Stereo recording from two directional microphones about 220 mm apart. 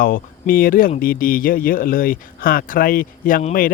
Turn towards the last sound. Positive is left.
turn(degrees=35)  # may be behind; listen again after turning